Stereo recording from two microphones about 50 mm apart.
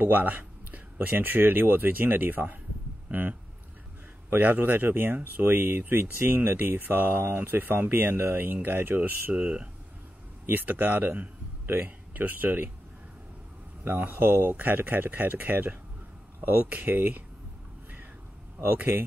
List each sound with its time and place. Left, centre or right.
0.0 s a man's voice: right
13.8 s speech: right
18.6 s speech: right